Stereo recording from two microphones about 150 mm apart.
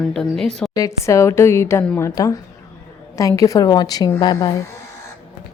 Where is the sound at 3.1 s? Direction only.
20° left (ahead or behind).